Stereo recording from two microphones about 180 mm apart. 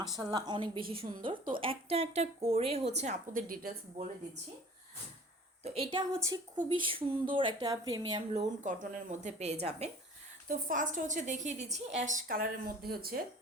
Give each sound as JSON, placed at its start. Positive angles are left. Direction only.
{"t": 0.1, "sound": "speech", "side_deg": -20}
{"t": 3.0, "sound": "a woman's voice", "side_deg": -45}
{"t": 5.6, "sound": "speech", "side_deg": -30}
{"t": 8.6, "sound": "speech", "side_deg": -45}
{"t": 10.5, "sound": "a woman's voice", "side_deg": -50}